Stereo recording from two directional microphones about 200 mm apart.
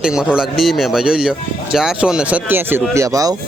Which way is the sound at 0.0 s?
5° right (ahead or behind).